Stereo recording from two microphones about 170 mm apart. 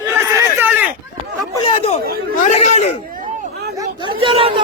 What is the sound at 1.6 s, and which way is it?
Chatter, 35° left (ahead or behind).